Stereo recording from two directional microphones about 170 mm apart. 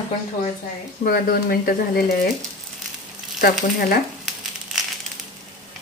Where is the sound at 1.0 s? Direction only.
60° left (ahead or behind).